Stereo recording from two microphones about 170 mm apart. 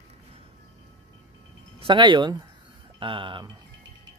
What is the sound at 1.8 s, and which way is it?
Speech, 30° right (ahead or behind).